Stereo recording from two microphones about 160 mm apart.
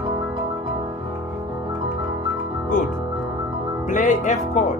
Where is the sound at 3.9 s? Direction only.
50° left (ahead or behind).